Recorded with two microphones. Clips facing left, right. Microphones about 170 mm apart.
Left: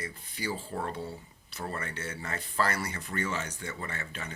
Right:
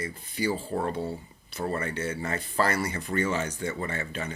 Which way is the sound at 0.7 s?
25° right (ahead or behind).